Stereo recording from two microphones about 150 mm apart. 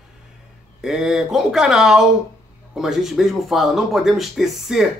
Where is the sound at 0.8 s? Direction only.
5° right (ahead or behind).